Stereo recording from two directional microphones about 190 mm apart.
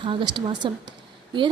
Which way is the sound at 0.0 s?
25° right (ahead or behind).